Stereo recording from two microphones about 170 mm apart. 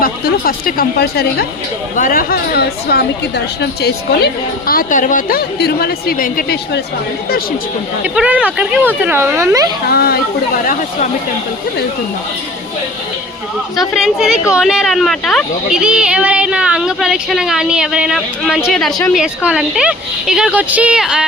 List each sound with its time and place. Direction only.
0.0 s a woman's voice: 60° left (ahead or behind)
2.0 s a woman's voice: 55° left (ahead or behind)
5.5 s a woman's voice: 70° left (ahead or behind)
8.0 s speech: 5° right (ahead or behind)
9.9 s a woman's voice: 65° left (ahead or behind)
13.7 s speech: centre (ahead or behind)